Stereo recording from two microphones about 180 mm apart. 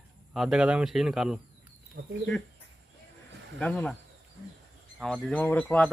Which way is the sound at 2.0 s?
75° right (ahead or behind).